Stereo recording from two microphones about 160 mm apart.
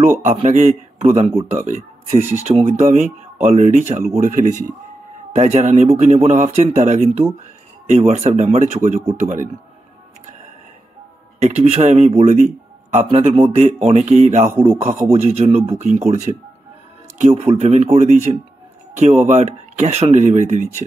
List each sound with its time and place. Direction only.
0.0 s a man's voice: 50° right (ahead or behind)
11.4 s a man's voice: 45° right (ahead or behind)
14.5 s a man's voice: 15° right (ahead or behind)
15.1 s speech: 45° right (ahead or behind)
16.1 s speech: 50° right (ahead or behind)